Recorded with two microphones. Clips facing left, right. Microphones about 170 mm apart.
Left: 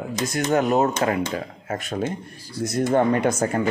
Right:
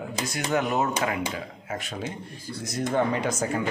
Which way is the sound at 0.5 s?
40° left (ahead or behind).